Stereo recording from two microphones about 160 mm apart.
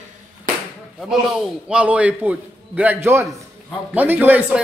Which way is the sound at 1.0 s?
5° right (ahead or behind).